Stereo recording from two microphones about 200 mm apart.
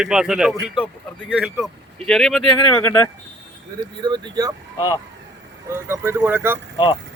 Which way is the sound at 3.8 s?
20° right (ahead or behind).